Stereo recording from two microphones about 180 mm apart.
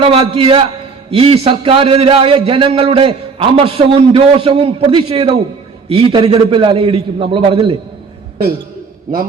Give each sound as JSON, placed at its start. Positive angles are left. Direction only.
{"t": 0.0, "sound": "a man's voice", "side_deg": -30}
{"t": 9.1, "sound": "a man's voice", "side_deg": -50}